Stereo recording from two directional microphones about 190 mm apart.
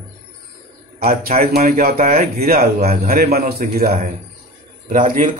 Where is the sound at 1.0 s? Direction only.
50° right (ahead or behind).